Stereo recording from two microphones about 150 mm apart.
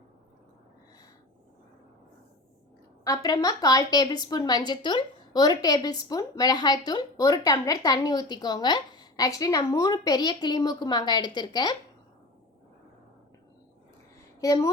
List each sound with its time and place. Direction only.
3.0 s a woman's voice: 25° left (ahead or behind)
14.4 s a woman's voice: 20° left (ahead or behind)